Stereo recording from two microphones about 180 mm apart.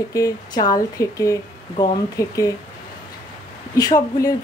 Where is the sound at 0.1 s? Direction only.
20° left (ahead or behind).